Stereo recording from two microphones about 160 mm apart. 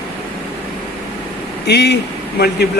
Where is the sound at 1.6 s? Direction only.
90° left.